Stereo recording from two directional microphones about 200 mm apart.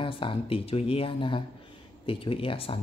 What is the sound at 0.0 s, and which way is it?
Speech, 25° left (ahead or behind).